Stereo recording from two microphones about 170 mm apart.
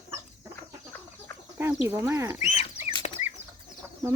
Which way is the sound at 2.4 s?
35° left (ahead or behind).